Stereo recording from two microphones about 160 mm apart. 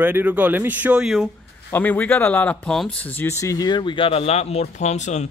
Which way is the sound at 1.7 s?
10° left (ahead or behind).